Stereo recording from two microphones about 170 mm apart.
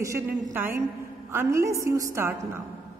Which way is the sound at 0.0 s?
15° right (ahead or behind).